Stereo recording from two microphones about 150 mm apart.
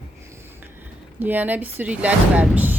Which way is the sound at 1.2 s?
10° right (ahead or behind).